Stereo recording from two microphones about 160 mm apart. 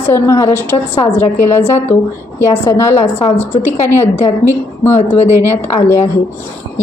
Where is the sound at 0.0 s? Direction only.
15° left (ahead or behind).